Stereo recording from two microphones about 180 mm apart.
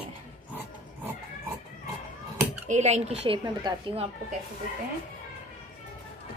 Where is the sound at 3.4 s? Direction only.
25° right (ahead or behind).